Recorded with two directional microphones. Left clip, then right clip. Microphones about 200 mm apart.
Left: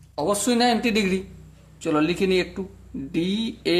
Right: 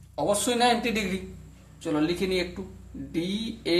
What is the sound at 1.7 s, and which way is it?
Speech, 50° left (ahead or behind).